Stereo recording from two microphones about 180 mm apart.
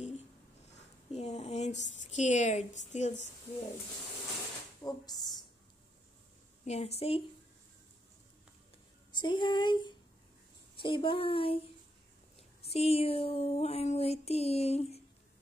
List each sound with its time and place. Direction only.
1.1 s a woman's voice: 35° left (ahead or behind)
4.8 s speech: 20° left (ahead or behind)
6.6 s female singing: 35° left (ahead or behind)
9.1 s speech: 25° left (ahead or behind)
10.8 s female singing: 25° left (ahead or behind)
12.6 s female singing: 35° left (ahead or behind)